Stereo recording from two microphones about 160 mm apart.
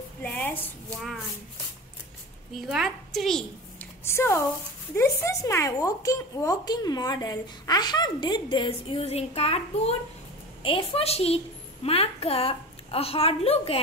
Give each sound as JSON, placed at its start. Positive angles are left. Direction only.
{"t": 0.2, "sound": "a sound", "side_deg": 10}
{"t": 2.5, "sound": "a woman's voice", "side_deg": 0}
{"t": 4.0, "sound": "a woman's voice", "side_deg": 15}